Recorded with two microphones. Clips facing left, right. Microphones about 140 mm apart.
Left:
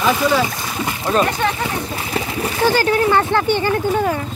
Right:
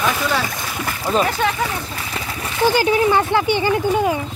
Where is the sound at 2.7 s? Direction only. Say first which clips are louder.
Even; 15° right (ahead or behind).